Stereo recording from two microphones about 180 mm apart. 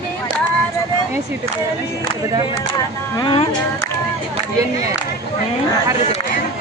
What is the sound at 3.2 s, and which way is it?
Speech, 30° left (ahead or behind).